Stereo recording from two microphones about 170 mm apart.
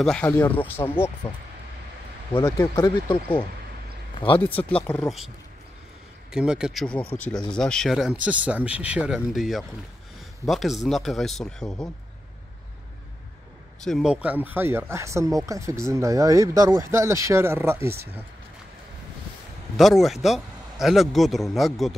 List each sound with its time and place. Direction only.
0.0 s speech: 5° left (ahead or behind)
2.7 s speech: 25° left (ahead or behind)
4.8 s speech: 5° left (ahead or behind)
6.3 s speech: 5° right (ahead or behind)
13.8 s speech: centre (ahead or behind)
19.8 s speech: centre (ahead or behind)